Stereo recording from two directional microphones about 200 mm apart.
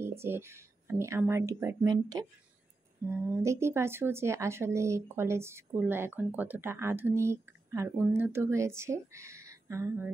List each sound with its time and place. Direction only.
0.2 s speech: 10° right (ahead or behind)